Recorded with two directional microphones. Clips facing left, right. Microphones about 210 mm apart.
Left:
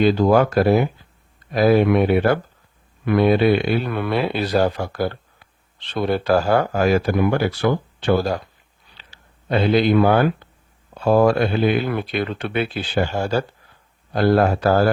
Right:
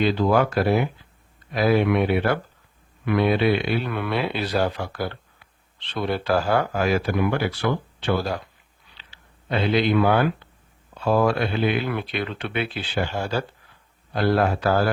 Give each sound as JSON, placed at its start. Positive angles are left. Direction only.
{"t": 0.0, "sound": "speech", "side_deg": 45}
{"t": 9.0, "sound": "a sound", "side_deg": 45}
{"t": 10.9, "sound": "speech", "side_deg": 45}